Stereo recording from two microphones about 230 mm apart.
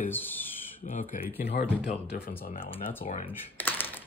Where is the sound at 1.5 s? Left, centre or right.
Centre.